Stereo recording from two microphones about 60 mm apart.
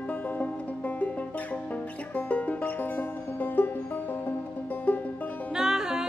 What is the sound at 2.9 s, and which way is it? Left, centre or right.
Music, left.